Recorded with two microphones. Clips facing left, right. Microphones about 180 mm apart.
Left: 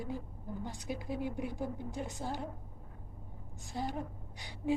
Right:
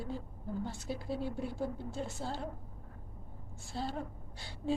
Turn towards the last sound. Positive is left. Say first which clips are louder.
# left 1 dB
turn(degrees=15)  # may be behind; listen again after turning